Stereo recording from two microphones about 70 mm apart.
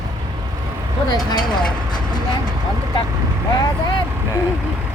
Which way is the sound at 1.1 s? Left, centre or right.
Left.